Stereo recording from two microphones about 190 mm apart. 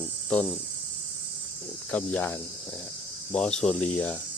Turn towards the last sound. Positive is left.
turn(degrees=5)  # may be behind; listen again after turning